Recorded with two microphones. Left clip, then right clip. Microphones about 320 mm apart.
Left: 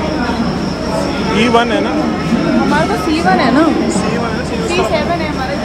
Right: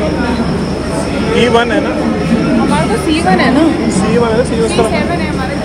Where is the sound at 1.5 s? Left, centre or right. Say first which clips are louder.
Left 2 dB; centre.